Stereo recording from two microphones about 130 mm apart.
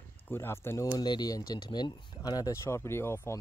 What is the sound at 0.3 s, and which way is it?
Speech, 20° left (ahead or behind).